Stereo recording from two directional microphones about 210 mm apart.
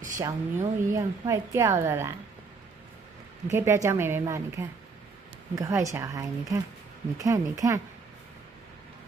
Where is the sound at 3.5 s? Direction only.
10° right (ahead or behind).